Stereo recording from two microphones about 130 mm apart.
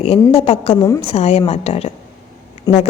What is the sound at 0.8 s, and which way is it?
Speech, 25° left (ahead or behind).